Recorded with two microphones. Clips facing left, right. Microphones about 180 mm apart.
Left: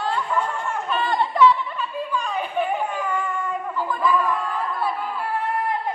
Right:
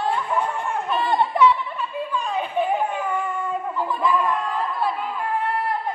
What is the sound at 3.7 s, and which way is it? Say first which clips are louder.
Chatter: left 1 dB; 25° right (ahead or behind).